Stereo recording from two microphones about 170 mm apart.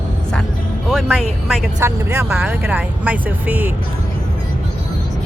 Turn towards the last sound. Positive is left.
turn(degrees=-10)  # may be behind; listen again after turning